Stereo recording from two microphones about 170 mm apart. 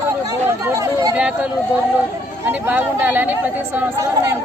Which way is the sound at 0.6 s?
20° right (ahead or behind).